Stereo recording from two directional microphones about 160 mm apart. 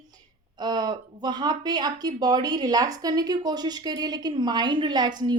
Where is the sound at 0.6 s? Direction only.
25° right (ahead or behind).